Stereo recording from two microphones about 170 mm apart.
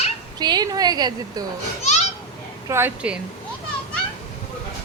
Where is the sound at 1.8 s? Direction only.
40° left (ahead or behind).